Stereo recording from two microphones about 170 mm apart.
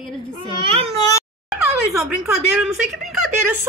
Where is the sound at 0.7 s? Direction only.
35° right (ahead or behind).